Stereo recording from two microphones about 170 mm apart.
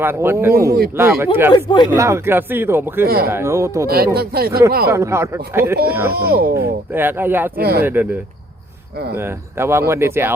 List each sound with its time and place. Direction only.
0.0 s speech: 15° right (ahead or behind)
1.5 s speech: 25° left (ahead or behind)
1.9 s speech: 15° right (ahead or behind)
3.1 s speech: 60° right (ahead or behind)
3.3 s speech: 15° right (ahead or behind)
3.8 s speech: 65° right (ahead or behind)
4.9 s speech: 15° right (ahead or behind)
6.1 s speech: 70° right (ahead or behind)
6.6 s speech: 10° right (ahead or behind)
7.5 s speech: 65° right (ahead or behind)
7.8 s speech: 10° right (ahead or behind)
9.1 s speech: 15° right (ahead or behind)